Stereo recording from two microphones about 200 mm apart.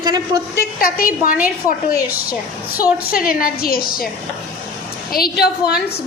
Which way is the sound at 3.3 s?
45° left (ahead or behind).